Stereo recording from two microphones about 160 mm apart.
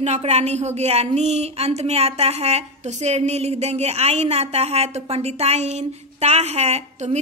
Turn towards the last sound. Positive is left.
turn(degrees=-45)  # may be behind; listen again after turning